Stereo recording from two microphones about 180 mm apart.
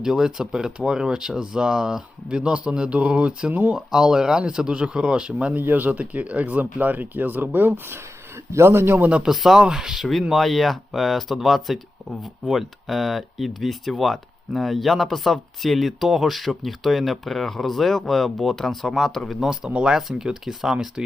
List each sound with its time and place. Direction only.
0.0 s speech: 5° right (ahead or behind)